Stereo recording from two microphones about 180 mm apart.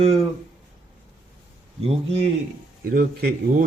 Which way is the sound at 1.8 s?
35° right (ahead or behind).